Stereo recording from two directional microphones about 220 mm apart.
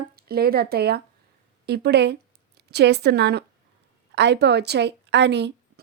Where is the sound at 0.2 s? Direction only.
45° right (ahead or behind).